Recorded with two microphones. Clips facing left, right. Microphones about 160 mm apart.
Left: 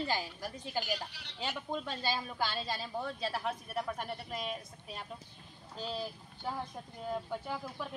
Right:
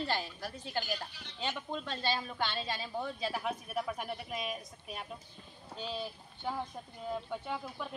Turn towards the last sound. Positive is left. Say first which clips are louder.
# even
turn(degrees=0)  # may be behind; listen again after turning